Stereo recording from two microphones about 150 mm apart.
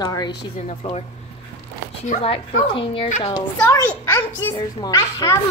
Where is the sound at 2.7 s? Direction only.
35° left (ahead or behind).